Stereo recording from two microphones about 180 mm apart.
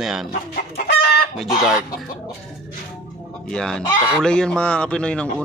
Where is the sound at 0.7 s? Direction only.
60° left (ahead or behind).